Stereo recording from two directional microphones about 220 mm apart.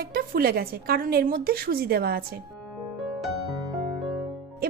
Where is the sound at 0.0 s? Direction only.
45° right (ahead or behind).